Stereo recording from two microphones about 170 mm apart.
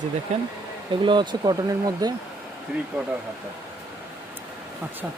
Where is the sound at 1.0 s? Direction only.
30° right (ahead or behind).